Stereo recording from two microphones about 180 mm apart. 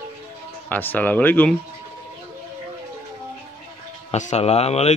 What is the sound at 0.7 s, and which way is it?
Speech, 10° left (ahead or behind).